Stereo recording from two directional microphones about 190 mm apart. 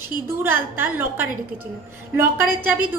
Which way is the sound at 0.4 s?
10° right (ahead or behind).